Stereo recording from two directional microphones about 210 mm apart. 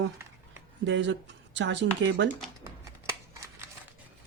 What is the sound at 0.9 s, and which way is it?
Speech, 60° right (ahead or behind).